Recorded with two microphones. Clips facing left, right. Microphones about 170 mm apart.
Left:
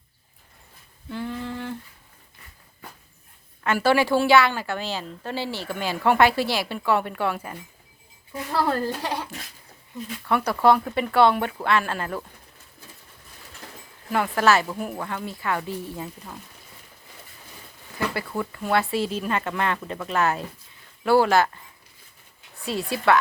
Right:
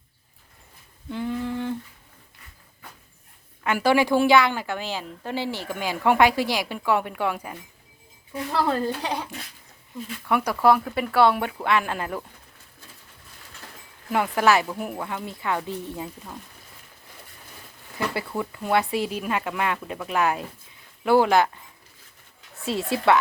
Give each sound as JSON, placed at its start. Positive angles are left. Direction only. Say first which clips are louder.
{"t": 1.1, "sound": "humming", "louder": "right 3 dB", "side_deg": -15}
{"t": 3.6, "sound": "a woman's voice", "louder": "even", "side_deg": -15}
{"t": 8.3, "sound": "speech", "louder": "even", "side_deg": 0}
{"t": 10.2, "sound": "a woman's voice", "louder": "even", "side_deg": -10}
{"t": 14.1, "sound": "a woman's voice", "louder": "even", "side_deg": -15}
{"t": 16.0, "sound": "speech", "louder": "right 1 dB", "side_deg": -5}
{"t": 18.6, "sound": "a woman's voice", "louder": "even", "side_deg": -20}
{"t": 22.6, "sound": "speech", "louder": "right 1 dB", "side_deg": -25}